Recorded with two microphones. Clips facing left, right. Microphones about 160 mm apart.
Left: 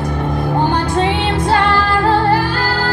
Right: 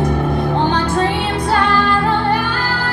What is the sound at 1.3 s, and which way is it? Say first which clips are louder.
Music: left 2 dB; 30° left (ahead or behind).